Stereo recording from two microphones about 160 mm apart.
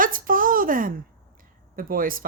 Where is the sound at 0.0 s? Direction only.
60° right (ahead or behind).